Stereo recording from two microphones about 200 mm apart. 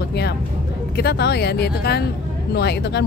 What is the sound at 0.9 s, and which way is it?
A woman's voice, 55° left (ahead or behind).